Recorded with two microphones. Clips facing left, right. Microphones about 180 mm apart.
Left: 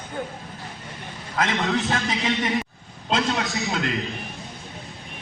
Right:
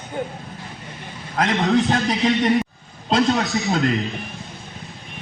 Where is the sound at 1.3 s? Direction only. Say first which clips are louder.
Right 5 dB; 40° right (ahead or behind).